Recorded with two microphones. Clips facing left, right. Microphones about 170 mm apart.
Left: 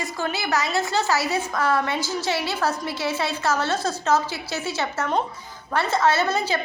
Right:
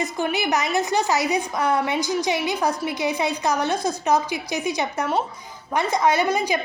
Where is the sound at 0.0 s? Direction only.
20° right (ahead or behind).